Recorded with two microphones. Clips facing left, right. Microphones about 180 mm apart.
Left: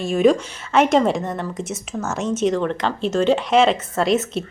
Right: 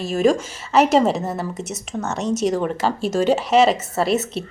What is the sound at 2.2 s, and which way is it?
Speech, 40° right (ahead or behind).